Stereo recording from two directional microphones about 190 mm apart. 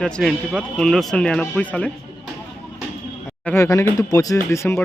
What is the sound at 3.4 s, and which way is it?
Speech, 15° left (ahead or behind).